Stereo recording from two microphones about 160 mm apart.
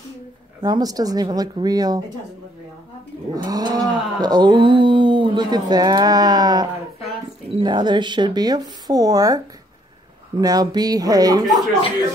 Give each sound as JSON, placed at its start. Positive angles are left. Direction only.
{"t": 0.6, "sound": "speech", "side_deg": -25}
{"t": 3.4, "sound": "speech", "side_deg": -25}
{"t": 11.4, "sound": "speech", "side_deg": 0}